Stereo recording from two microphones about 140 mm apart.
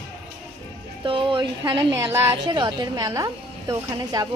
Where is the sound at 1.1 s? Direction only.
35° right (ahead or behind).